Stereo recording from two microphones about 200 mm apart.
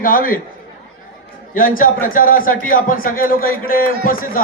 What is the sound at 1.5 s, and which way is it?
A man's voice, 45° left (ahead or behind).